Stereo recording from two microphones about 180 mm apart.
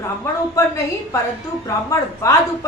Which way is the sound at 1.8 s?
15° left (ahead or behind).